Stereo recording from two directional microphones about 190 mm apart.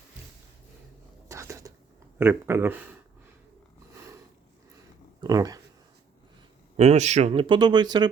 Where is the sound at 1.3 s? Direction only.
15° right (ahead or behind).